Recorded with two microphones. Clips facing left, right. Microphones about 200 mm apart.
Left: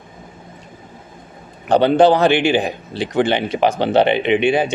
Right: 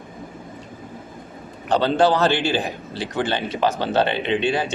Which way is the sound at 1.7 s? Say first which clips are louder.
Left 6 dB; 15° left (ahead or behind).